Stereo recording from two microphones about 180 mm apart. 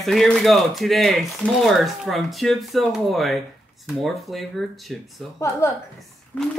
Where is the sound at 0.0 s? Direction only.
Centre (ahead or behind).